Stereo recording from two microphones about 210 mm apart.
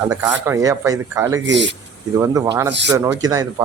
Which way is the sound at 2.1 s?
15° right (ahead or behind).